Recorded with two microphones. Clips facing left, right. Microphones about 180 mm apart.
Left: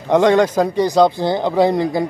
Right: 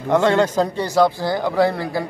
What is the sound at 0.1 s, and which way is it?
Speech, 15° left (ahead or behind).